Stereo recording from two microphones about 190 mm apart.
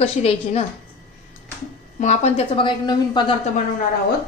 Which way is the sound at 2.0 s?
35° left (ahead or behind).